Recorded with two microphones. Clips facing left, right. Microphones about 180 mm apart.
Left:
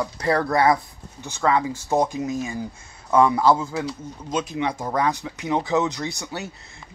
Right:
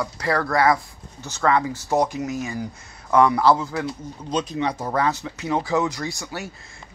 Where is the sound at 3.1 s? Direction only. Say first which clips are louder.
Even; 20° left (ahead or behind).